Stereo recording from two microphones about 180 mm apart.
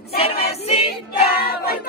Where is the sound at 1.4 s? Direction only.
60° left (ahead or behind).